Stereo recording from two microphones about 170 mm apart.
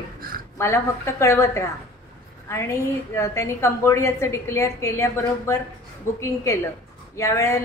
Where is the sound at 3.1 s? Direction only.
15° left (ahead or behind).